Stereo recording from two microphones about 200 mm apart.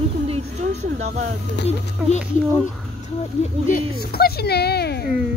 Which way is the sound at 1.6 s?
60° left (ahead or behind).